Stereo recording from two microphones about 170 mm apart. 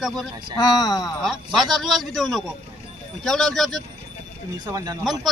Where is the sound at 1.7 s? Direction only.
Centre (ahead or behind).